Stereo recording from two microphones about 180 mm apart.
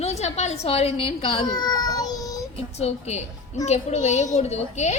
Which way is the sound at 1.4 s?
20° left (ahead or behind).